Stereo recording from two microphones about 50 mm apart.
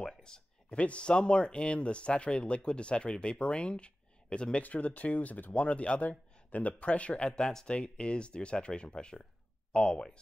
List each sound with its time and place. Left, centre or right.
0.0 s speech: centre